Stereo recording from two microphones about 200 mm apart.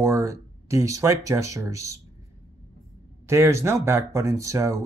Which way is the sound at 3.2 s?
15° right (ahead or behind).